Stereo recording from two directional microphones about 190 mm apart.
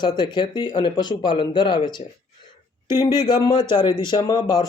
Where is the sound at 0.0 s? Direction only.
25° left (ahead or behind).